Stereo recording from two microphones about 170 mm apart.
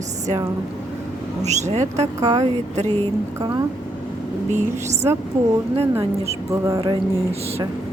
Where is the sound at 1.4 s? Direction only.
40° right (ahead or behind).